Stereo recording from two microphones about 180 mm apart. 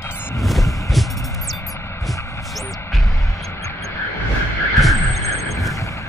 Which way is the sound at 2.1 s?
15° left (ahead or behind).